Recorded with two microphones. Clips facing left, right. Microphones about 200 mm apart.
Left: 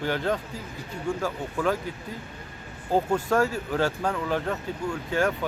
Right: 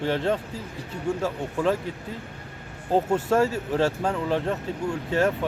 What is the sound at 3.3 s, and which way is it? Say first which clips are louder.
Speech: right 2 dB; 25° right (ahead or behind).